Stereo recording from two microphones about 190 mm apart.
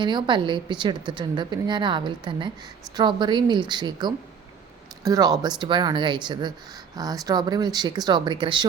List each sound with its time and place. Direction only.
0.0 s a woman's voice: 25° right (ahead or behind)